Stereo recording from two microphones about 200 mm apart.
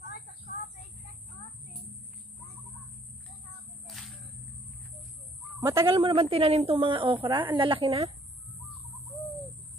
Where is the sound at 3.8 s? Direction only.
Centre (ahead or behind).